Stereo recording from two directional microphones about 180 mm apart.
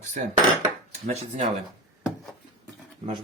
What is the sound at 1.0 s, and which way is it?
Speech, 40° right (ahead or behind).